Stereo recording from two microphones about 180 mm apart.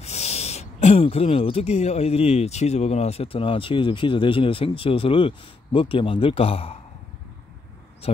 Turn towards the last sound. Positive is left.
turn(degrees=35)  # may be behind; listen again after turning